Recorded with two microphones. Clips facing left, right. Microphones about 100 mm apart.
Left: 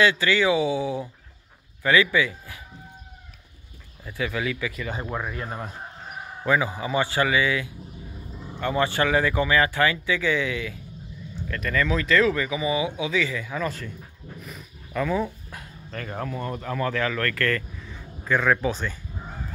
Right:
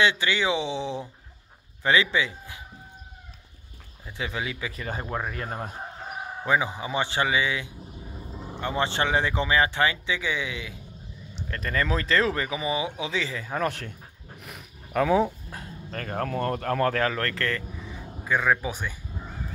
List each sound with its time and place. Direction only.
0.0 s speech: 20° right (ahead or behind)
4.0 s speech: 25° right (ahead or behind)
5.4 s speech: 45° right (ahead or behind)
6.4 s speech: 20° right (ahead or behind)
11.4 s speech: 35° right (ahead or behind)
13.6 s speech: 65° right (ahead or behind)
15.2 s speech: 35° right (ahead or behind); by 18.9 s 15° right (ahead or behind)